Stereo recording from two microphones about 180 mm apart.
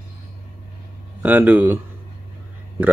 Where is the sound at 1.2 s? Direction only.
10° right (ahead or behind).